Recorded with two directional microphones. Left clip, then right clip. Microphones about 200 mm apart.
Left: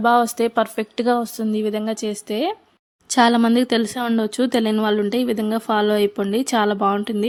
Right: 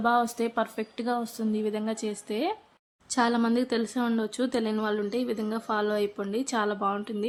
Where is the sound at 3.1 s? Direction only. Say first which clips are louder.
Left 10 dB; 45° left (ahead or behind).